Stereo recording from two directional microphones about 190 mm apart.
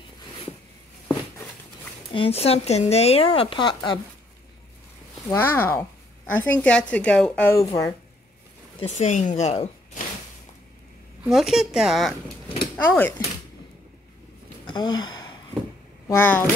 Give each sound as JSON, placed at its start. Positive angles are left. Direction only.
{"t": 2.1, "sound": "speech", "side_deg": 30}
{"t": 5.3, "sound": "a woman's voice", "side_deg": 10}
{"t": 8.7, "sound": "speech", "side_deg": 35}
{"t": 11.2, "sound": "speech", "side_deg": 0}
{"t": 12.7, "sound": "speech", "side_deg": 10}
{"t": 14.7, "sound": "a sound", "side_deg": 20}
{"t": 16.2, "sound": "a woman's voice", "side_deg": 10}